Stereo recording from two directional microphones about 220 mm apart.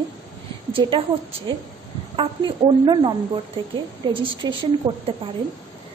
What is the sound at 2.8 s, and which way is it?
A woman's voice, 20° right (ahead or behind).